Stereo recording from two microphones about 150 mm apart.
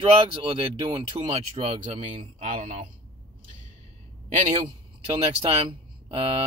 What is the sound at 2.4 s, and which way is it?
Speech, 50° right (ahead or behind).